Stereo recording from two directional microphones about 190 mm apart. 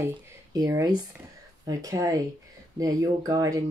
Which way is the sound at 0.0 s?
15° right (ahead or behind).